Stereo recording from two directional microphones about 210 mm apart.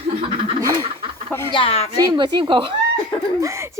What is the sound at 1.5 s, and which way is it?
Speech, 25° left (ahead or behind).